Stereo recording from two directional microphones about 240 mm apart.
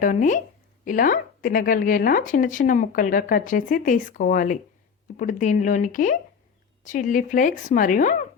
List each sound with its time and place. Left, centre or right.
0.0 s speech: left